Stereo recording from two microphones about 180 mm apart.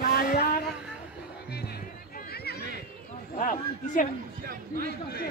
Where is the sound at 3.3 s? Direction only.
45° left (ahead or behind).